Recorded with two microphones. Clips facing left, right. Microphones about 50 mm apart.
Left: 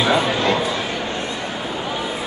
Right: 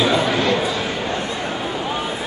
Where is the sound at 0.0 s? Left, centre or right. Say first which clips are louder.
Even; centre.